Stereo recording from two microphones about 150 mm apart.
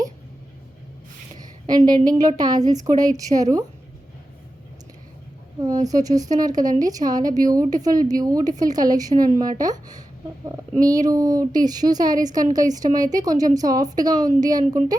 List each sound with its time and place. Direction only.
1.6 s a woman's voice: 25° right (ahead or behind)
5.6 s a woman's voice: 25° right (ahead or behind)